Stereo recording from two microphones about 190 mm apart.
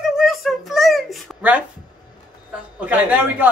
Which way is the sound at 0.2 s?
Centre (ahead or behind).